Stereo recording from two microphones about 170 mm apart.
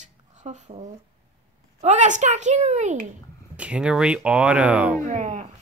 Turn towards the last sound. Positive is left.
turn(degrees=-45)  # may be behind; listen again after turning